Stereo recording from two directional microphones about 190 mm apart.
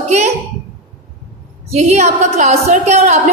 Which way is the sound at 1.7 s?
35° right (ahead or behind).